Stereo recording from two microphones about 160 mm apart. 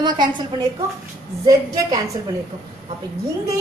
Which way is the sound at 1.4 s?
25° right (ahead or behind).